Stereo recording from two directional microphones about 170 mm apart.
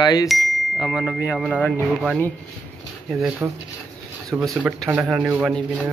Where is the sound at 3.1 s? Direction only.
Centre (ahead or behind).